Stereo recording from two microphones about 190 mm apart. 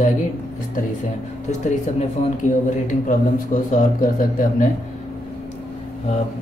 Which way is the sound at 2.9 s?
45° left (ahead or behind).